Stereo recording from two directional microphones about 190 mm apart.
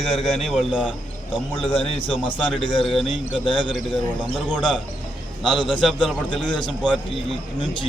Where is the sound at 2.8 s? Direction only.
Centre (ahead or behind).